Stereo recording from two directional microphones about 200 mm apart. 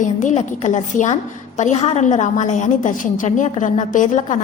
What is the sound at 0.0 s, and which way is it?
A woman's voice, 40° left (ahead or behind).